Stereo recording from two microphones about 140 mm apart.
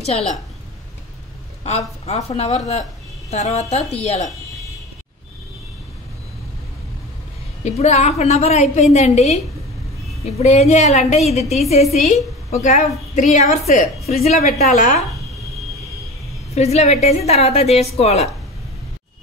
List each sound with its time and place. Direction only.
1.6 s a woman's voice: 50° left (ahead or behind)
7.6 s a woman's voice: 50° left (ahead or behind)
12.6 s a woman's voice: 60° left (ahead or behind)
16.5 s a woman's voice: 50° left (ahead or behind)